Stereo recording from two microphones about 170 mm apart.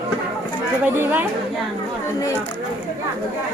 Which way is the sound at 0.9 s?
10° right (ahead or behind).